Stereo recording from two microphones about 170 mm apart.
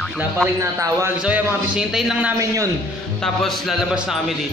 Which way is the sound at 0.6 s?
20° right (ahead or behind).